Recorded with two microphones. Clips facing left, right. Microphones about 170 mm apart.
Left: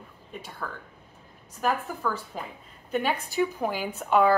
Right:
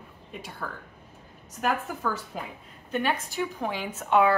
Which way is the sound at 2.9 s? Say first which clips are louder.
Left 2 dB; 5° left (ahead or behind).